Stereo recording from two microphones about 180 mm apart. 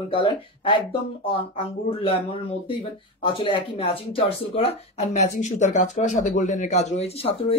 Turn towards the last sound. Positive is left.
turn(degrees=30)  # may be behind; listen again after turning